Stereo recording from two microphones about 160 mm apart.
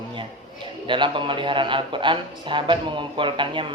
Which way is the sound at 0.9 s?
30° right (ahead or behind).